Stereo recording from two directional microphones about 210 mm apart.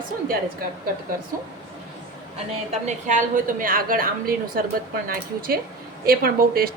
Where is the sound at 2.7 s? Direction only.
35° right (ahead or behind).